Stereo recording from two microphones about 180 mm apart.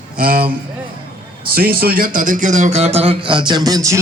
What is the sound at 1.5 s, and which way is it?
Speech, 55° right (ahead or behind).